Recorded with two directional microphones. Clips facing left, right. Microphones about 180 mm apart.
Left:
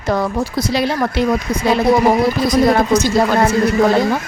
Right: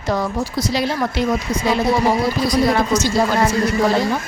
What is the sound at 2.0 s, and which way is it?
Speech, 45° left (ahead or behind).